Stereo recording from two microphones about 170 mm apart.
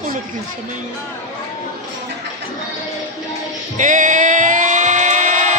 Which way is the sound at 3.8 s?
50° right (ahead or behind).